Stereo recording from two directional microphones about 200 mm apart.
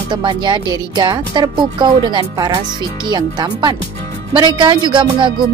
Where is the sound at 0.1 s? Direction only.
20° right (ahead or behind).